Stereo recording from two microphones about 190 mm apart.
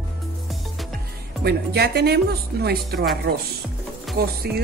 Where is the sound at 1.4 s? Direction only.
60° right (ahead or behind).